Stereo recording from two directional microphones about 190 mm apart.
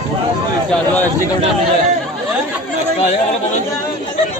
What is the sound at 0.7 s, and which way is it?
Speech, 10° left (ahead or behind).